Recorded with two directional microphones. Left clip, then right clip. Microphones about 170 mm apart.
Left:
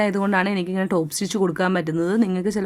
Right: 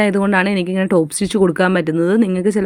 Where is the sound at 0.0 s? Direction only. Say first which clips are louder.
Right 5 dB; 20° right (ahead or behind).